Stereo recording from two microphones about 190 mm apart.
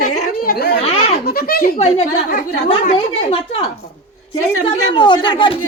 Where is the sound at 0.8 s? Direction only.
35° left (ahead or behind).